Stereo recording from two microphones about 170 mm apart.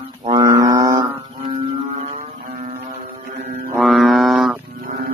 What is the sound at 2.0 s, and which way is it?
Music, 40° right (ahead or behind).